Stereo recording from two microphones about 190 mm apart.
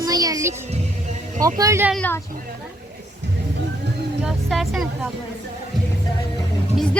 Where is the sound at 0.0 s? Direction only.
20° right (ahead or behind).